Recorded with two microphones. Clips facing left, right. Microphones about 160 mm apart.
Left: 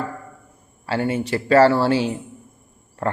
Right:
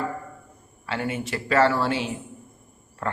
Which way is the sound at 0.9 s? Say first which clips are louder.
Left 6 dB; 30° left (ahead or behind).